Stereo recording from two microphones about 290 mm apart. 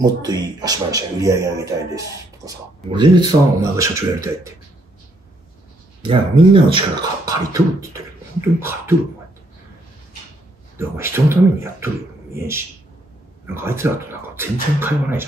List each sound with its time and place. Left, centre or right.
0.0 s speech: centre
6.0 s speech: centre
10.8 s speech: centre
13.6 s speech: centre